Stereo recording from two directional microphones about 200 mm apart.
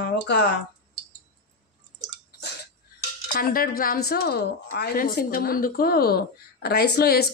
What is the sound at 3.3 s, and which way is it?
A woman's voice, 45° left (ahead or behind).